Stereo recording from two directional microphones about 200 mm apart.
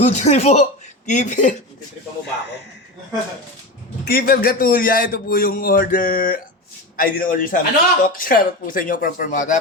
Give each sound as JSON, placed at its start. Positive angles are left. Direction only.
{"t": 0.0, "sound": "speech", "side_deg": 35}
{"t": 4.0, "sound": "a man's voice", "side_deg": 45}